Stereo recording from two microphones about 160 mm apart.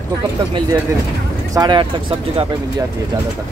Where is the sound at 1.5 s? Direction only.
25° right (ahead or behind).